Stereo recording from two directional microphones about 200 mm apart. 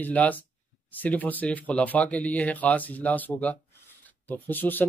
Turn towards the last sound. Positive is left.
turn(degrees=10)  # may be behind; listen again after turning